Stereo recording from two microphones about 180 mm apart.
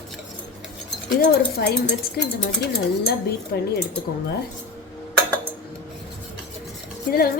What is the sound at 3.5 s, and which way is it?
Speech, 60° left (ahead or behind).